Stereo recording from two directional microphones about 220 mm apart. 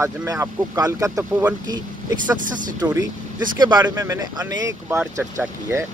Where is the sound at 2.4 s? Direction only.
35° right (ahead or behind).